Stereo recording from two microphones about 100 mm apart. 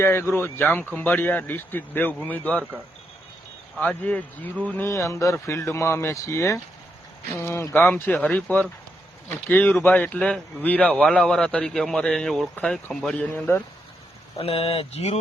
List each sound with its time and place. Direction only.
0.0 s a man's voice: 25° left (ahead or behind)
3.8 s a man's voice: 15° left (ahead or behind)
4.9 s a man's voice: 30° left (ahead or behind)
11.0 s a man's voice: 5° left (ahead or behind)
13.3 s speech: 20° left (ahead or behind)
14.3 s speech: 70° left (ahead or behind); by 15.2 s 90° left